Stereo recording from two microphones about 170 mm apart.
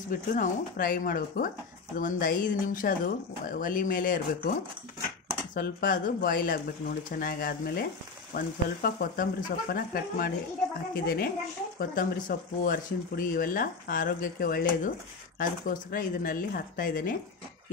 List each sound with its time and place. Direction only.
0.1 s speech: 55° left (ahead or behind)
5.5 s speech: 55° left (ahead or behind)